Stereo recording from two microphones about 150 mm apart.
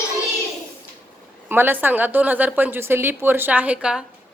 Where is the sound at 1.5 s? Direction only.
15° right (ahead or behind).